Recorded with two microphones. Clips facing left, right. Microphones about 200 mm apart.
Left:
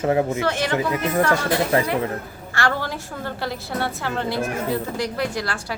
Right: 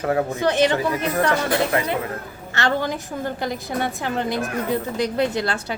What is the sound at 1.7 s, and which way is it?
Speech, 30° left (ahead or behind).